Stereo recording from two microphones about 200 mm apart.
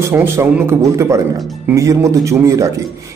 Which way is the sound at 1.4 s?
Centre (ahead or behind).